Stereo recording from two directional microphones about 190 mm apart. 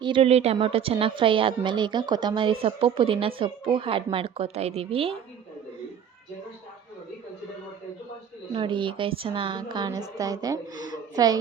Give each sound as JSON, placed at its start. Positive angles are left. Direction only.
{"t": 0.0, "sound": "a woman's voice", "side_deg": -30}
{"t": 8.5, "sound": "a woman's voice", "side_deg": -25}